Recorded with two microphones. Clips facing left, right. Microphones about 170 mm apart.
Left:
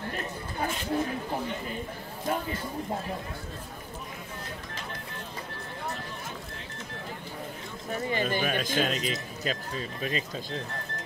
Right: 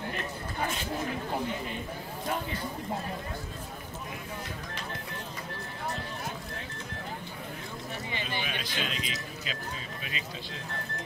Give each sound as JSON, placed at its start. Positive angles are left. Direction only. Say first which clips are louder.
{"t": 7.9, "sound": "speech", "louder": "left 9 dB", "side_deg": 45}